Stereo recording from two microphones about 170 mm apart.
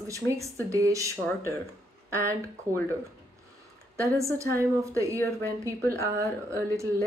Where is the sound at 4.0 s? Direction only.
15° right (ahead or behind).